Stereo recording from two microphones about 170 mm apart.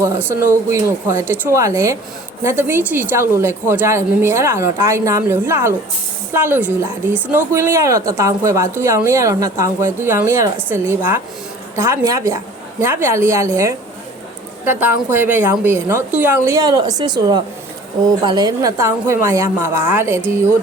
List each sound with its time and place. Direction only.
0.0 s speech: 15° right (ahead or behind)
16.7 s a woman's voice: 25° right (ahead or behind)